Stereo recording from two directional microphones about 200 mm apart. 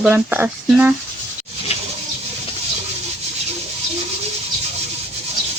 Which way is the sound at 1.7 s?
30° left (ahead or behind).